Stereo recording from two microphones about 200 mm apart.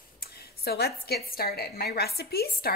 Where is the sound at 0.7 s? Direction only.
55° left (ahead or behind).